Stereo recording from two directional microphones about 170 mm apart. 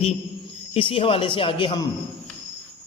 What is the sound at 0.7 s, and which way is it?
A man's voice, 30° left (ahead or behind).